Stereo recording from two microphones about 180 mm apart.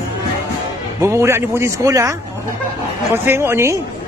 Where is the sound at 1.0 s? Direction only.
15° right (ahead or behind).